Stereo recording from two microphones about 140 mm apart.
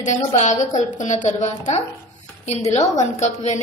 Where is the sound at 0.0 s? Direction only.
60° left (ahead or behind).